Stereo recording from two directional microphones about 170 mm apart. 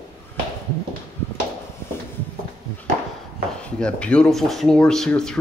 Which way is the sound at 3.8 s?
5° left (ahead or behind).